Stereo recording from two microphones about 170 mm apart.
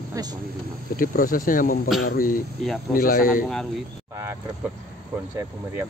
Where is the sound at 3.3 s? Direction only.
Centre (ahead or behind).